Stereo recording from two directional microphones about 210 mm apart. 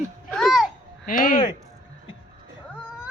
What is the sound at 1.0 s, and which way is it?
Speech, 40° left (ahead or behind).